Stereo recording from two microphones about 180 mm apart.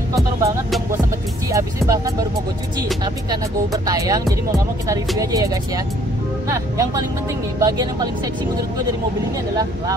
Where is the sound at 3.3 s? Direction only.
20° right (ahead or behind).